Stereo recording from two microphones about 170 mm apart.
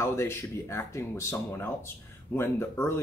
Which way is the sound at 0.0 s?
15° left (ahead or behind).